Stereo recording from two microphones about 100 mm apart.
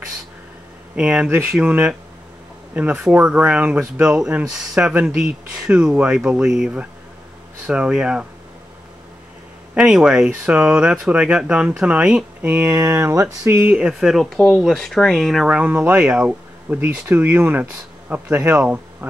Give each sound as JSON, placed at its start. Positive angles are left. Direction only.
{"t": 0.9, "sound": "speech", "side_deg": -10}
{"t": 9.8, "sound": "speech", "side_deg": -5}
{"t": 12.6, "sound": "speech", "side_deg": -30}
{"t": 13.7, "sound": "speech", "side_deg": -10}
{"t": 15.4, "sound": "speech", "side_deg": -15}